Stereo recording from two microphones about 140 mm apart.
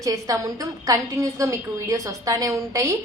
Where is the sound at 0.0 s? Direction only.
25° right (ahead or behind).